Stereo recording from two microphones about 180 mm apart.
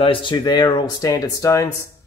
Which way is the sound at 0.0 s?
30° left (ahead or behind).